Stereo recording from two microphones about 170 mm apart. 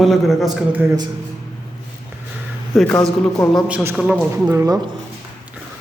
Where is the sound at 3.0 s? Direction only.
5° left (ahead or behind).